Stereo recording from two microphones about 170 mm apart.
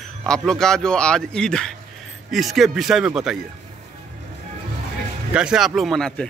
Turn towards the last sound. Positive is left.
turn(degrees=5)  # may be behind; listen again after turning